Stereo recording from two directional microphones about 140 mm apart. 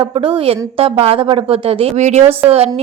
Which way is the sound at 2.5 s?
45° right (ahead or behind).